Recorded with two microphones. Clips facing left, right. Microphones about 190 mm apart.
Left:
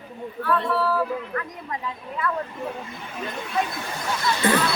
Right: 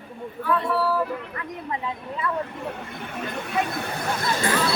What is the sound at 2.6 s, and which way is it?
Speech, 65° right (ahead or behind).